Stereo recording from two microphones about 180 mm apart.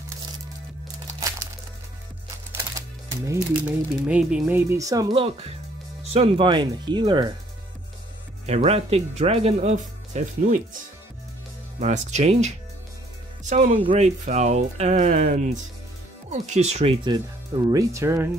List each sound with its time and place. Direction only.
2.5 s speech: 20° right (ahead or behind)
8.5 s speech: 35° right (ahead or behind)
11.8 s speech: 40° right (ahead or behind)
17.6 s speech: 15° right (ahead or behind)